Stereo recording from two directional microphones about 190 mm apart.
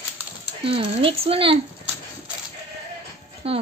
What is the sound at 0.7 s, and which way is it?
Speech, 30° right (ahead or behind).